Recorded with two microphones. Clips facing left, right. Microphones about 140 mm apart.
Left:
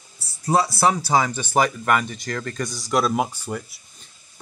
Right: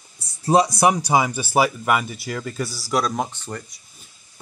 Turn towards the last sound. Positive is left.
turn(degrees=5)  # may be behind; listen again after turning